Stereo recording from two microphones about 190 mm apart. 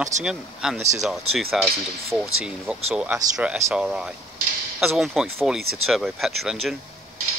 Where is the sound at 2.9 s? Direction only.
5° right (ahead or behind).